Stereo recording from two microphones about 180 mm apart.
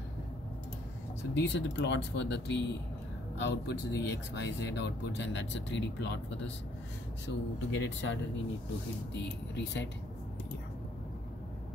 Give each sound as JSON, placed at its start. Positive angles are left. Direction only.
{"t": 1.3, "sound": "speech", "side_deg": 75}
{"t": 7.2, "sound": "speech", "side_deg": 90}
{"t": 9.1, "sound": "speech", "side_deg": 75}